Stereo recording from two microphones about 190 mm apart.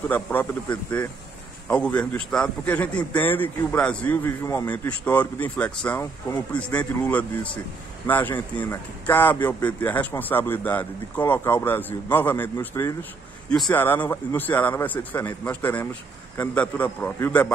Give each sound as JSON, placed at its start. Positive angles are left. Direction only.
{"t": 0.1, "sound": "speech", "side_deg": 10}